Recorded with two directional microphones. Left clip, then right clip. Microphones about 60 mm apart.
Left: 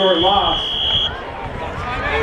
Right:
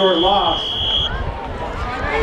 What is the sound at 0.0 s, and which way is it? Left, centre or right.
Fire alarm, centre.